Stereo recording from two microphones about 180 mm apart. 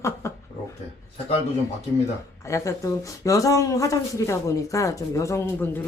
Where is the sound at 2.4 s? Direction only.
15° left (ahead or behind).